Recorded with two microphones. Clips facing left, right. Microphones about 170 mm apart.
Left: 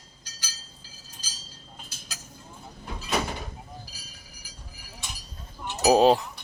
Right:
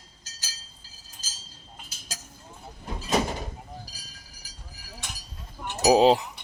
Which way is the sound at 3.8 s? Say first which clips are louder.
Even; 40° right (ahead or behind).